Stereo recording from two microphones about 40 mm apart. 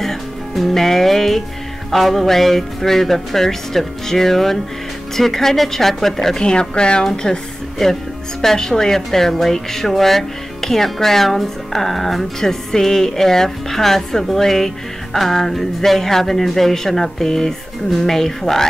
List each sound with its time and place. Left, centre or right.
0.0 s music: centre
1.9 s speech: centre
6.4 s speech: left
7.8 s speech: centre